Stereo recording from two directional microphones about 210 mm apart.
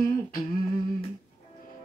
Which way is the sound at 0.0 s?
40° left (ahead or behind).